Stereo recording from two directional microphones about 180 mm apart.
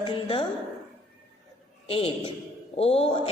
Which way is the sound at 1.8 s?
30° left (ahead or behind).